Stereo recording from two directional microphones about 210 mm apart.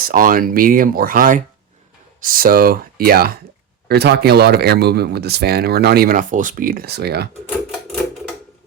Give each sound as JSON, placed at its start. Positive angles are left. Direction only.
{"t": 0.1, "sound": "speech", "side_deg": -40}